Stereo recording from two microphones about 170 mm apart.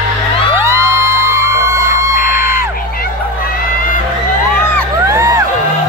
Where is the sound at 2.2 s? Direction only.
55° left (ahead or behind).